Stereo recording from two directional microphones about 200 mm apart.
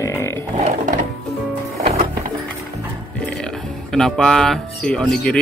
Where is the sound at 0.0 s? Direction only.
15° left (ahead or behind).